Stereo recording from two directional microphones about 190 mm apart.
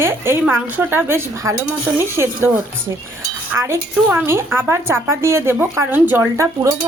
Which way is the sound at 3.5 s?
15° right (ahead or behind).